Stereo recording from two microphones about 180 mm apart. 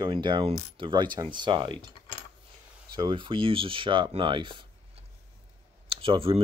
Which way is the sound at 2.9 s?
25° right (ahead or behind).